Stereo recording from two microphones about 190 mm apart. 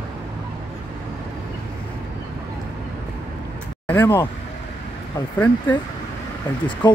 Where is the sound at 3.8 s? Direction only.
10° left (ahead or behind).